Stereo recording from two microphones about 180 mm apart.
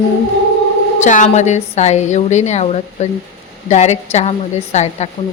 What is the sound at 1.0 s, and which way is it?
A woman's voice, 45° left (ahead or behind).